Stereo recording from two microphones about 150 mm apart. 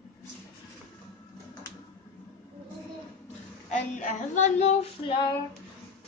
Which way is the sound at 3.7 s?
55° left (ahead or behind).